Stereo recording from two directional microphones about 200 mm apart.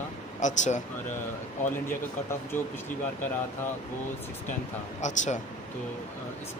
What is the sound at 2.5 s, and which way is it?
Speech, 10° left (ahead or behind).